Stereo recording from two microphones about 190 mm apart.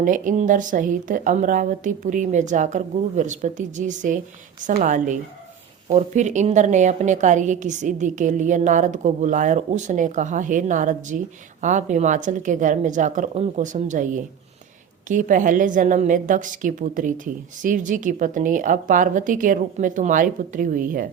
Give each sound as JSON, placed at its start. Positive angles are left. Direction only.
{"t": 0.0, "sound": "a woman's voice", "side_deg": -45}